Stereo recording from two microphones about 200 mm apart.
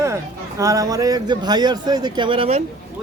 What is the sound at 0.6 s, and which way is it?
A man's voice, 15° right (ahead or behind).